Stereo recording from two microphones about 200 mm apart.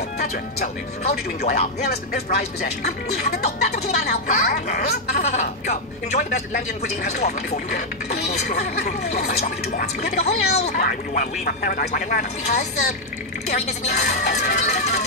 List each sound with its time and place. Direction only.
1.4 s speech: 35° left (ahead or behind)
1.9 s speech: 45° left (ahead or behind)
4.6 s speech: 50° left (ahead or behind)
5.2 s speech: 35° left (ahead or behind)
10.8 s speech: 45° left (ahead or behind)